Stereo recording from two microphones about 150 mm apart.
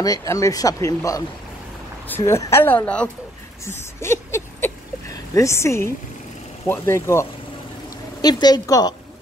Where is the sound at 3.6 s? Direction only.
15° left (ahead or behind).